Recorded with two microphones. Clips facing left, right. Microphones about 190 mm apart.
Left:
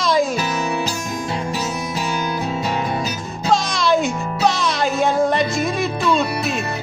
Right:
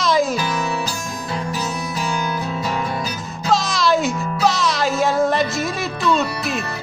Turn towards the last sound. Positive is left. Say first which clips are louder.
# left 2 dB
turn(degrees=0)  # may be behind; listen again after turning